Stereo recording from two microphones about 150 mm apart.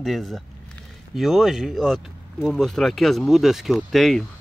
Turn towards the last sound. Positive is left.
turn(degrees=0)  # may be behind; listen again after turning